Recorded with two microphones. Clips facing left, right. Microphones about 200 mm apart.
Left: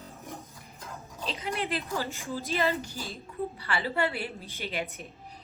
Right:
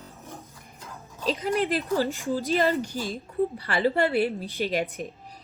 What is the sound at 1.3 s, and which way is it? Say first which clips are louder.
A woman's voice: right 8 dB; 45° right (ahead or behind).